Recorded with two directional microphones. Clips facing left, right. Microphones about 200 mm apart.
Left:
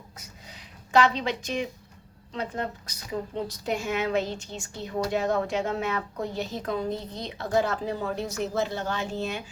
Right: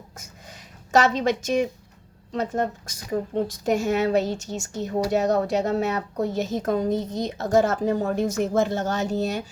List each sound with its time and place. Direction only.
0.9 s a woman's voice: 45° right (ahead or behind)